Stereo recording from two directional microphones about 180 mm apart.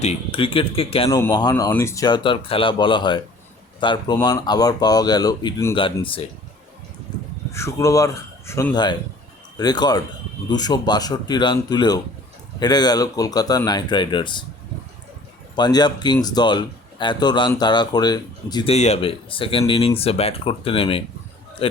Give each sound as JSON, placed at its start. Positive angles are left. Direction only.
{"t": 0.0, "sound": "speech", "side_deg": 35}
{"t": 1.1, "sound": "speech", "side_deg": 20}
{"t": 7.5, "sound": "speech", "side_deg": 15}
{"t": 15.5, "sound": "speech", "side_deg": 25}
{"t": 18.7, "sound": "speech", "side_deg": 35}